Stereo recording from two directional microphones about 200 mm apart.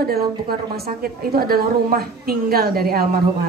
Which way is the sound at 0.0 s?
50° right (ahead or behind).